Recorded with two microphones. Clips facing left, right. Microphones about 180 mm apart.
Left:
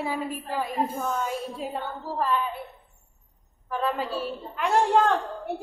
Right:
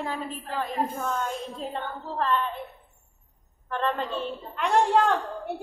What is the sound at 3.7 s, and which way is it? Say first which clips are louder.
A woman's voice: even; 5° left (ahead or behind).